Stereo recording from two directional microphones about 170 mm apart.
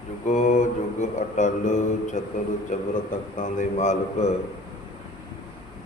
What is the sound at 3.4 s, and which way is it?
Mantra, 45° left (ahead or behind).